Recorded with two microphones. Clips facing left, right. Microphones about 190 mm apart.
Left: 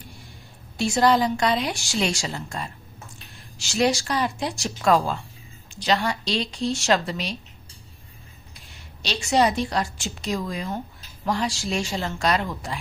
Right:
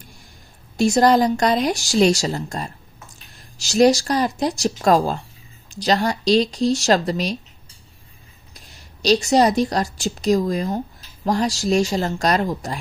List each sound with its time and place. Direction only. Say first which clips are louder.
0.8 s speech: right 5 dB; 45° right (ahead or behind)
8.5 s speech: right 3 dB; 40° right (ahead or behind)